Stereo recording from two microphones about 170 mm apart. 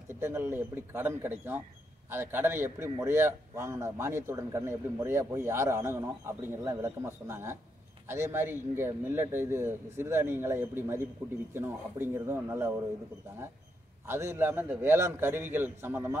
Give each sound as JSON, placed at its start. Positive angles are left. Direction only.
{"t": 0.1, "sound": "a man's voice", "side_deg": -15}
{"t": 14.0, "sound": "a man's voice", "side_deg": -15}